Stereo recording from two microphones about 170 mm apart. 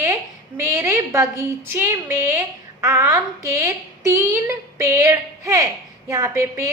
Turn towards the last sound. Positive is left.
turn(degrees=-15)  # may be behind; listen again after turning